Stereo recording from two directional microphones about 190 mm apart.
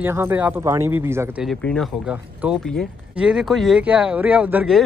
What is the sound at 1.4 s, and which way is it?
Speech, 5° left (ahead or behind).